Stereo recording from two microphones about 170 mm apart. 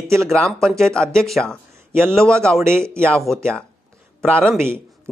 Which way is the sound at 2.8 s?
15° right (ahead or behind).